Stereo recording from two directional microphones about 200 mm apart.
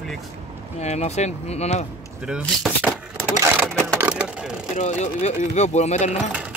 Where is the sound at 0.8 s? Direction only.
35° left (ahead or behind).